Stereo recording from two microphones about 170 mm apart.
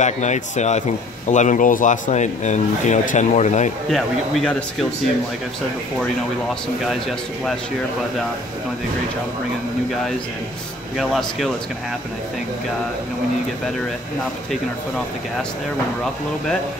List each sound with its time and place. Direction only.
0.0 s speech: 45° left (ahead or behind)
3.9 s speech: 5° left (ahead or behind)
11.0 s speech: centre (ahead or behind)